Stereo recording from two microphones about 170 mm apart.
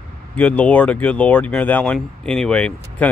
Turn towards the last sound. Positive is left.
turn(degrees=5)  # may be behind; listen again after turning